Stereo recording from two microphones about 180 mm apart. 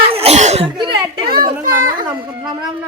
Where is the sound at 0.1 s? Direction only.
35° right (ahead or behind).